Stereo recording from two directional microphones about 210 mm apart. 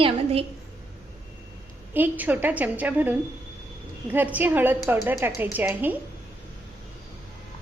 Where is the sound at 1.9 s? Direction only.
10° right (ahead or behind).